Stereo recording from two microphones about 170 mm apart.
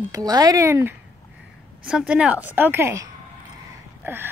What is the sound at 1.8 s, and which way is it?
Speech, 5° right (ahead or behind).